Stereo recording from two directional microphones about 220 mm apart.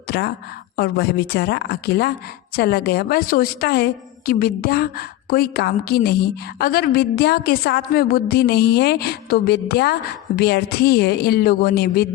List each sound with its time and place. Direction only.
0.1 s a woman's voice: 45° left (ahead or behind)